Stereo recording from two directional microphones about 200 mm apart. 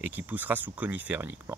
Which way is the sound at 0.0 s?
10° right (ahead or behind).